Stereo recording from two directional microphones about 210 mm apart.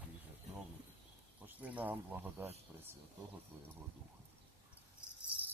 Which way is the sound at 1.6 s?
5° right (ahead or behind).